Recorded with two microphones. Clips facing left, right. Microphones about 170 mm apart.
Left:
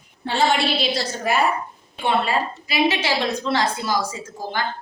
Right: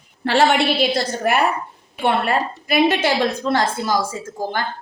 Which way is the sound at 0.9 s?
65° right (ahead or behind).